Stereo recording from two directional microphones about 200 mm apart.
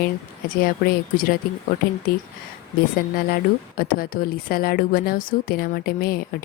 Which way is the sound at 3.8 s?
45° left (ahead or behind).